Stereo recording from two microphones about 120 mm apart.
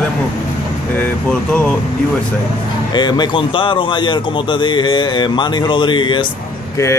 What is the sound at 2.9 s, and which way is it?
A man's voice, 35° left (ahead or behind).